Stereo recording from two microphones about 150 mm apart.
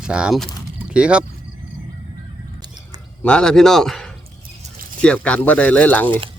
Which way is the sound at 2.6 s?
30° right (ahead or behind).